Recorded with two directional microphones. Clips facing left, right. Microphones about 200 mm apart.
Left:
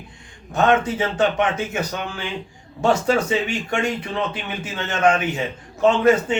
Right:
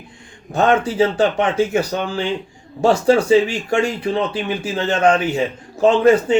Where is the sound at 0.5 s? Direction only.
30° right (ahead or behind).